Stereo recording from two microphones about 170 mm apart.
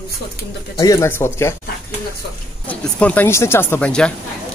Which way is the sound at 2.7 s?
10° left (ahead or behind).